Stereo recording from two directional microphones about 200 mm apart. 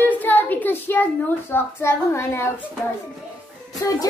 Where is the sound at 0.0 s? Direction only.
10° left (ahead or behind).